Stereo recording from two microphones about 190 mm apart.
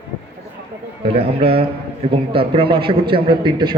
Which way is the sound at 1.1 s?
30° right (ahead or behind).